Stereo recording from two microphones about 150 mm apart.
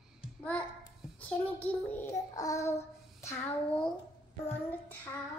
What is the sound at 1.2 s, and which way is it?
Child singing, 10° left (ahead or behind).